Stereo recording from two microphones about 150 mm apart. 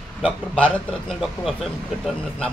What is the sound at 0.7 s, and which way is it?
A man's voice, 5° left (ahead or behind).